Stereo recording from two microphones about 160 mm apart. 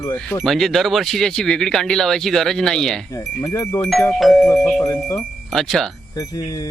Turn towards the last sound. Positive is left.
turn(degrees=20)  # may be behind; listen again after turning